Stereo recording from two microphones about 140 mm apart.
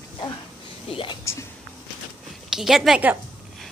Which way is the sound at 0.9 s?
40° left (ahead or behind).